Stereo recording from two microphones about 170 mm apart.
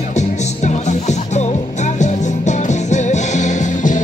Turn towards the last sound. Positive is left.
turn(degrees=45)  # may be behind; listen again after turning